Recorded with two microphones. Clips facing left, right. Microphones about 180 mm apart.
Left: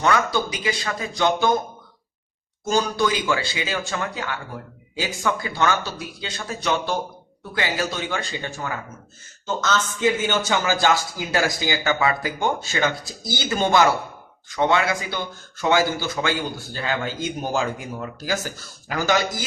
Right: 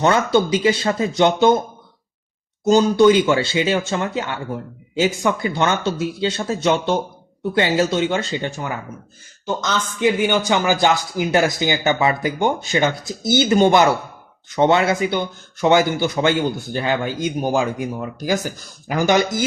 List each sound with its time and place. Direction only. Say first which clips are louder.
0.0 s speech: right 5 dB; 25° right (ahead or behind)
2.6 s speech: right 9 dB; 20° right (ahead or behind)